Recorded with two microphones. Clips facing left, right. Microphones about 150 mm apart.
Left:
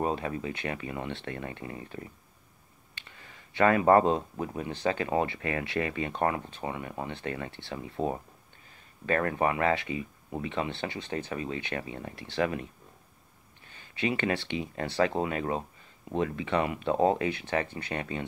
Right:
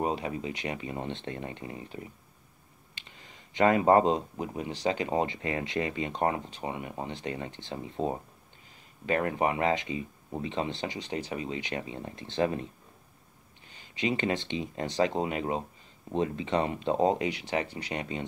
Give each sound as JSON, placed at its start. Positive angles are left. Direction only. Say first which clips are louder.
{"t": 0.0, "sound": "speech", "louder": "even", "side_deg": -20}
{"t": 10.8, "sound": "speech", "louder": "even", "side_deg": -15}
{"t": 13.9, "sound": "speech", "louder": "even", "side_deg": -25}
{"t": 17.3, "sound": "speech", "louder": "left 1 dB", "side_deg": -15}